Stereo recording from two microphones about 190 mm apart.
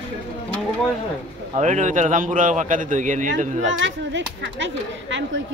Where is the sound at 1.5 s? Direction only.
40° right (ahead or behind).